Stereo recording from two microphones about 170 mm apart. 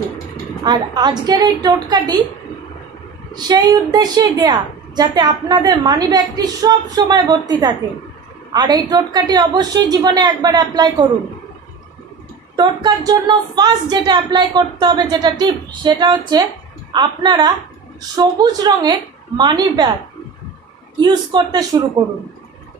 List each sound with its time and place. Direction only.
0.7 s a woman's voice: 25° right (ahead or behind)
3.3 s a woman's voice: 25° right (ahead or behind)
12.5 s a woman's voice: 25° right (ahead or behind)
21.0 s a woman's voice: 25° right (ahead or behind)